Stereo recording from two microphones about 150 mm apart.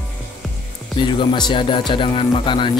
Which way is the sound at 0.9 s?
35° left (ahead or behind).